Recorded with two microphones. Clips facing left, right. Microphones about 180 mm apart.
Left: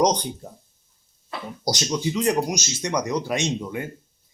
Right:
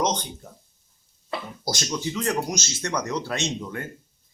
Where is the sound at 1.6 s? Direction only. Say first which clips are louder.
Left 5 dB; 15° left (ahead or behind).